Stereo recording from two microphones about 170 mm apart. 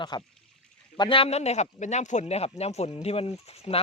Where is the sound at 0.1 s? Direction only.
25° left (ahead or behind).